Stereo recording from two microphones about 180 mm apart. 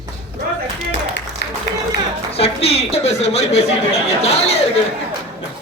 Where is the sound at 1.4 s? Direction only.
70° left (ahead or behind).